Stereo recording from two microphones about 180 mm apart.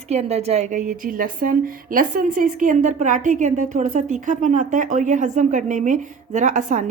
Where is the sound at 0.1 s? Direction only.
35° right (ahead or behind).